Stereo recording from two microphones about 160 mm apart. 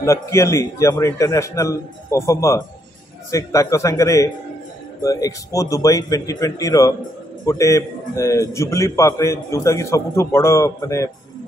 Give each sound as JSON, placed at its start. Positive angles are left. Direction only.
{"t": 0.0, "sound": "a man's voice", "side_deg": 20}